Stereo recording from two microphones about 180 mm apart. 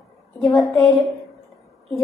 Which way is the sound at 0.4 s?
20° left (ahead or behind).